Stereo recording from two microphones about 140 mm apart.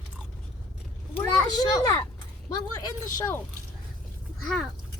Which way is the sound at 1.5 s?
25° left (ahead or behind).